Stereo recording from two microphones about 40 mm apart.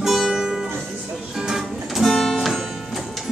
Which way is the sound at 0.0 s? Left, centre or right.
Centre.